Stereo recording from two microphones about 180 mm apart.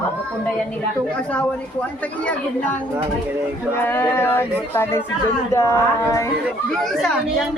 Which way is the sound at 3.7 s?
10° left (ahead or behind).